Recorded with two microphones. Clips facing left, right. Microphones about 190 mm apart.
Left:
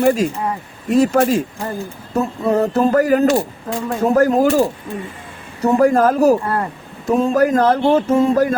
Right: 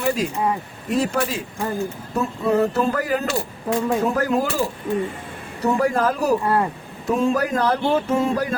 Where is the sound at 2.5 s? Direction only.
40° left (ahead or behind).